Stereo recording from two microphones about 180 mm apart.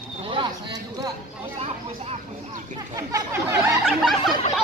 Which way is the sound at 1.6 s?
35° right (ahead or behind).